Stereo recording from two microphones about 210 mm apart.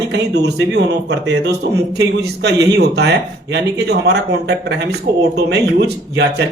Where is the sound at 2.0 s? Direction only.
55° right (ahead or behind).